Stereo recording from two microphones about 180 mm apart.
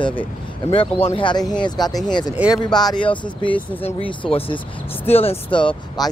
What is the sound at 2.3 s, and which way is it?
Speech, 5° right (ahead or behind).